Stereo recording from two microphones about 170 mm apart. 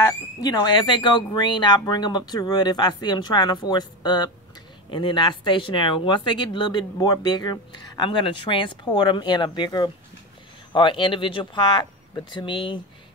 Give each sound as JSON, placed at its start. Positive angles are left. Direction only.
{"t": 0.0, "sound": "speech", "side_deg": 20}